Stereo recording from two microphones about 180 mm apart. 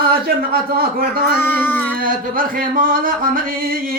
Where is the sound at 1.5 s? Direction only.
10° left (ahead or behind).